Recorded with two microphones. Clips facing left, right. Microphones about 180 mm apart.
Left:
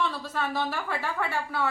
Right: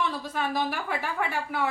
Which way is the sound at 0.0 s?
15° right (ahead or behind).